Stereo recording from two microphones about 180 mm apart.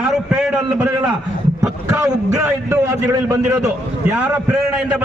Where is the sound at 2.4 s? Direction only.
15° right (ahead or behind).